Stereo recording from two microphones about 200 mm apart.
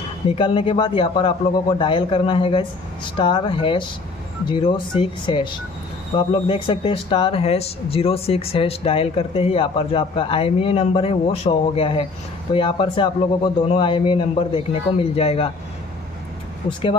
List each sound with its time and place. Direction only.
0.4 s speech: 25° left (ahead or behind)